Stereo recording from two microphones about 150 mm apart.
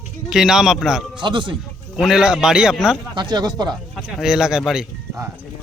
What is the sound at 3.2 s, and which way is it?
Speech, 30° right (ahead or behind).